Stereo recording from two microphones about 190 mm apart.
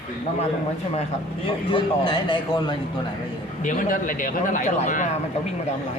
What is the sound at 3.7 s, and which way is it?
A man's voice, 45° left (ahead or behind).